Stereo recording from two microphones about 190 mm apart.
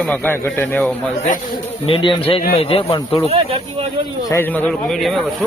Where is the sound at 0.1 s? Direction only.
10° left (ahead or behind).